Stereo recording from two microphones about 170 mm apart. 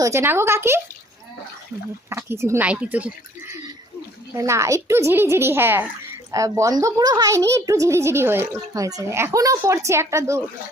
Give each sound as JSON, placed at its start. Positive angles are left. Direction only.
{"t": 0.0, "sound": "a woman's voice", "side_deg": -15}
{"t": 2.0, "sound": "a woman's voice", "side_deg": -15}